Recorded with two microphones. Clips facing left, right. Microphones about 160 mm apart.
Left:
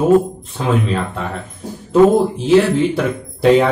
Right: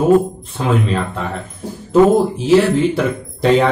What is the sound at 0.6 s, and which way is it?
Speech, centre (ahead or behind).